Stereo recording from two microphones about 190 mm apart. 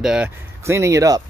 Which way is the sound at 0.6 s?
15° right (ahead or behind).